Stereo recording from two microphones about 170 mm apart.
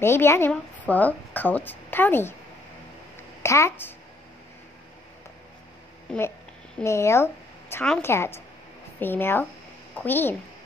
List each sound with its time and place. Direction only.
0.0 s a woman's voice: 15° left (ahead or behind)
3.2 s a sound: 15° left (ahead or behind)
6.1 s speech: 5° left (ahead or behind)
6.8 s a woman's voice: 15° left (ahead or behind)